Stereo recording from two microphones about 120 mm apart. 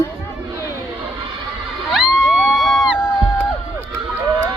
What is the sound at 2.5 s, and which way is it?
Crowd, centre (ahead or behind).